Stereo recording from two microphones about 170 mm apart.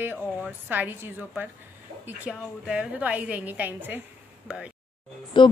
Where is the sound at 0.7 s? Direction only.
10° right (ahead or behind).